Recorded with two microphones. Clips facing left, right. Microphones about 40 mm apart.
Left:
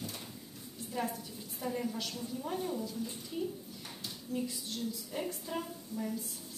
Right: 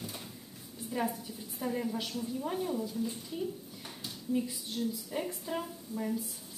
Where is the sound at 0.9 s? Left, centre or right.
Centre.